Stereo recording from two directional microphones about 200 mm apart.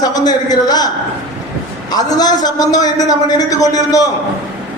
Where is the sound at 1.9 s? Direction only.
20° left (ahead or behind).